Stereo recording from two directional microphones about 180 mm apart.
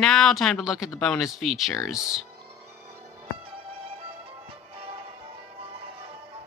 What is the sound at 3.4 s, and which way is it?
Music, 30° right (ahead or behind).